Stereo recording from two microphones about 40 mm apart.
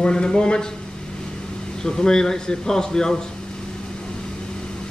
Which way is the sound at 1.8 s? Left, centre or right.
Centre.